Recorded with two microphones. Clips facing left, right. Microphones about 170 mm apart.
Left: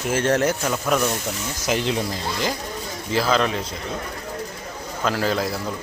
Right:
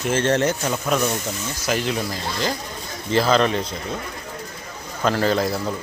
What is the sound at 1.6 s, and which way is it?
Speech, 20° left (ahead or behind).